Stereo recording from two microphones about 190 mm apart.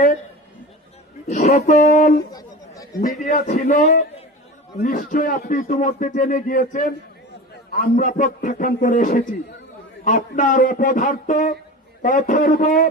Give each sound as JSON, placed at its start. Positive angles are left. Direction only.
{"t": 1.3, "sound": "a man's voice", "side_deg": 40}
{"t": 3.3, "sound": "a man's voice", "side_deg": 40}